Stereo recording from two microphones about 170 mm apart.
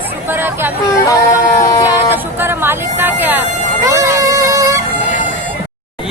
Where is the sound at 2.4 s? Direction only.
15° right (ahead or behind).